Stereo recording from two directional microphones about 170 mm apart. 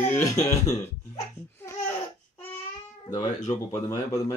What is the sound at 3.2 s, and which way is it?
Speech, 45° left (ahead or behind).